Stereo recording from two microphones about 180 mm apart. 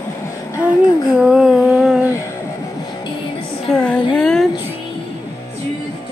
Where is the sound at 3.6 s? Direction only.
5° left (ahead or behind).